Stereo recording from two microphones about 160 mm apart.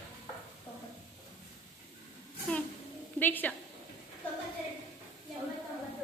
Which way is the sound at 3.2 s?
10° left (ahead or behind).